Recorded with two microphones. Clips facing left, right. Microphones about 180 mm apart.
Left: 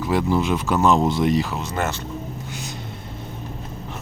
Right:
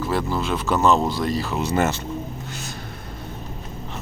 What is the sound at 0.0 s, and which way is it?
Speech, 15° left (ahead or behind).